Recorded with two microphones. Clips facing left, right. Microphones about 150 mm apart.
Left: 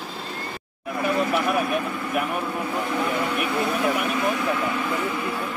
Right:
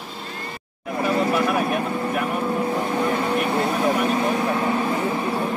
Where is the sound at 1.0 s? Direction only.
35° right (ahead or behind).